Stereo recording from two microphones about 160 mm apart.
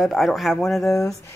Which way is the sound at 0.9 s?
20° left (ahead or behind).